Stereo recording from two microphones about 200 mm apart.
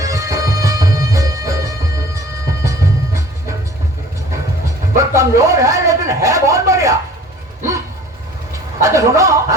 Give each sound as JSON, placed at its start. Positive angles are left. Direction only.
{"t": 0.0, "sound": "music", "side_deg": -15}
{"t": 4.9, "sound": "speech", "side_deg": -15}
{"t": 8.8, "sound": "a man's voice", "side_deg": -15}